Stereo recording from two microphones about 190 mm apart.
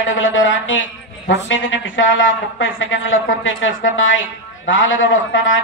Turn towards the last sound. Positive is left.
turn(degrees=90)